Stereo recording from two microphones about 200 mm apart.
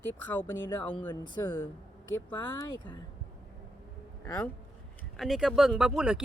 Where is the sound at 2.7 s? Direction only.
20° left (ahead or behind).